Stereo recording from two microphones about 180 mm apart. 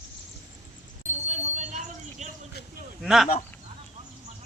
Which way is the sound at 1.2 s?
40° right (ahead or behind).